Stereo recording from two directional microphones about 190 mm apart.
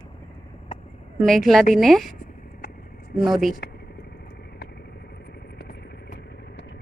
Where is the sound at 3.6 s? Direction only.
60° left (ahead or behind).